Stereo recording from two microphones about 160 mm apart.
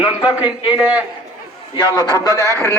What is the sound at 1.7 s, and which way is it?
Speech, 25° left (ahead or behind).